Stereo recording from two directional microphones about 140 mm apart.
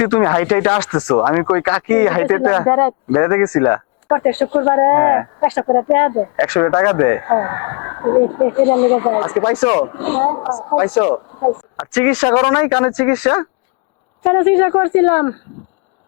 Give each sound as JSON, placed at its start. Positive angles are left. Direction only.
{"t": 0.0, "sound": "speech", "side_deg": 20}
{"t": 11.8, "sound": "speech", "side_deg": 15}